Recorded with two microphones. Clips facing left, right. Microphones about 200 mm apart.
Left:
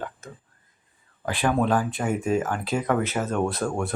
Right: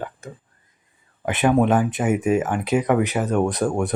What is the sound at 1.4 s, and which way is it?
Speech, 20° right (ahead or behind).